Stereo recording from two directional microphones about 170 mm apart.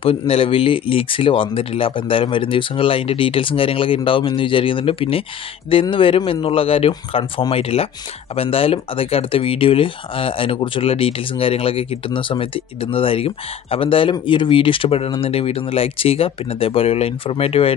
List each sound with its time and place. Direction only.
0.0 s speech: 35° left (ahead or behind)